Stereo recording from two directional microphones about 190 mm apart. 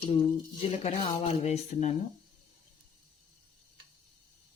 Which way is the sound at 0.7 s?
35° left (ahead or behind).